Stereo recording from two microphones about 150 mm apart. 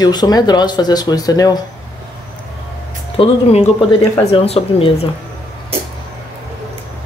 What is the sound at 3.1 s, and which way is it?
Speech, 45° left (ahead or behind).